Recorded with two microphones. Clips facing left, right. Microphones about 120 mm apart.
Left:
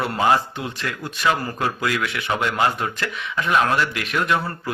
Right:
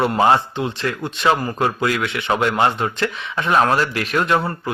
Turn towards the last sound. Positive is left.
turn(degrees=-35)  # may be behind; listen again after turning